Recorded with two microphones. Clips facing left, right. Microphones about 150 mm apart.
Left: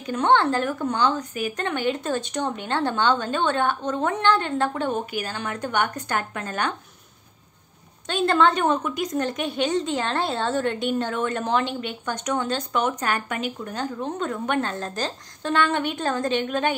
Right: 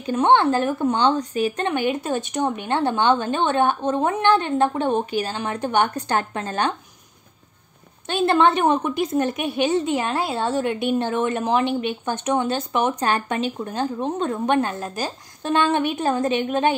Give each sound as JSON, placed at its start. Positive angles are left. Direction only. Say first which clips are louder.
{"t": 0.0, "sound": "speech", "louder": "right 3 dB", "side_deg": -20}
{"t": 1.6, "sound": "speech", "louder": "right 3 dB", "side_deg": -15}
{"t": 8.1, "sound": "speech", "louder": "right 2 dB", "side_deg": -20}
{"t": 14.6, "sound": "speech", "louder": "right 2 dB", "side_deg": -15}